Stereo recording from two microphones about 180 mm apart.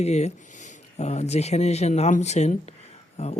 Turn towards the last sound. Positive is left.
turn(degrees=35)  # may be behind; listen again after turning